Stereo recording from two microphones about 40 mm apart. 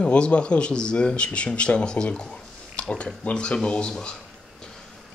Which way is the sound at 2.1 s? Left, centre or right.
Left.